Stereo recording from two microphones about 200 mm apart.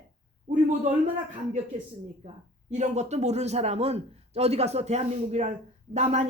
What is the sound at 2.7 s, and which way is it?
A man's voice, 35° right (ahead or behind).